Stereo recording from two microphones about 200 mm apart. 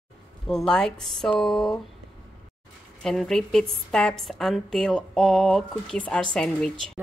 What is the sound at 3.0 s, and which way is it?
Speech, centre (ahead or behind).